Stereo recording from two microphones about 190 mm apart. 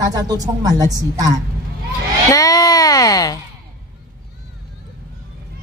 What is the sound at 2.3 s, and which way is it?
Speech, 20° left (ahead or behind).